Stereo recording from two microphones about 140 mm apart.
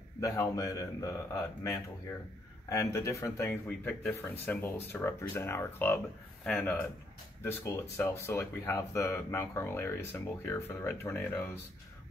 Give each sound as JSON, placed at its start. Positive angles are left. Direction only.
{"t": 0.2, "sound": "speech", "side_deg": 25}
{"t": 8.0, "sound": "speech", "side_deg": 20}